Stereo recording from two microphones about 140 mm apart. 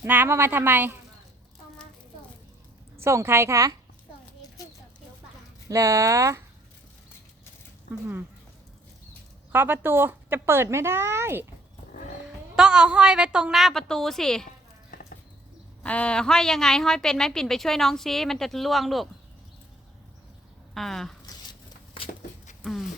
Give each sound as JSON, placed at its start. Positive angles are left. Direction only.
{"t": 0.0, "sound": "a woman's voice", "side_deg": -15}
{"t": 3.0, "sound": "a woman's voice", "side_deg": -20}
{"t": 5.6, "sound": "a woman's voice", "side_deg": -25}
{"t": 9.5, "sound": "a woman's voice", "side_deg": -15}
{"t": 12.2, "sound": "a woman's voice", "side_deg": -5}
{"t": 15.8, "sound": "a woman's voice", "side_deg": 10}
{"t": 20.7, "sound": "a woman's voice", "side_deg": 0}